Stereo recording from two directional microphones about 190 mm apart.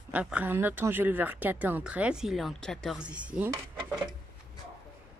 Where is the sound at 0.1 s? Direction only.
5° right (ahead or behind).